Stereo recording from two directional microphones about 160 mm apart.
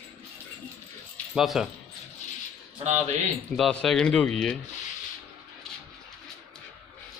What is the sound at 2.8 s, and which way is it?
Speech, 45° right (ahead or behind).